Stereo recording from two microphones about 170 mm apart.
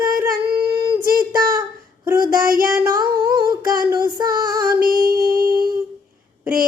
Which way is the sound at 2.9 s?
20° right (ahead or behind).